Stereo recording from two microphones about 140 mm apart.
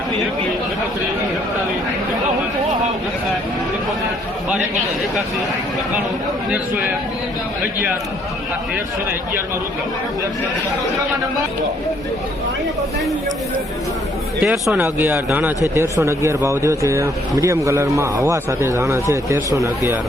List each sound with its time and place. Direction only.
14.4 s speech: 5° right (ahead or behind); by 19.4 s 20° right (ahead or behind)